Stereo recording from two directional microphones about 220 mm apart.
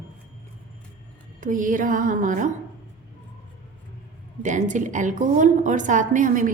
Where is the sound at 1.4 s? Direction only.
35° right (ahead or behind).